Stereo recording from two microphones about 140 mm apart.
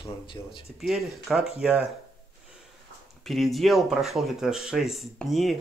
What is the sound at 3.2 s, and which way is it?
Speech, centre (ahead or behind).